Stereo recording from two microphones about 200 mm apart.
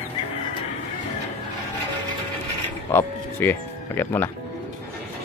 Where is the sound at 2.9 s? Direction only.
10° left (ahead or behind).